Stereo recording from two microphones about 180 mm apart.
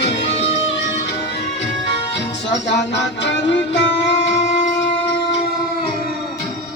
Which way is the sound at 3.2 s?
75° left (ahead or behind).